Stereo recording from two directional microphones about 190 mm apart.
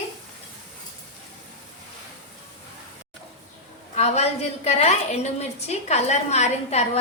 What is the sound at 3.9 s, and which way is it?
A woman's voice, 35° left (ahead or behind).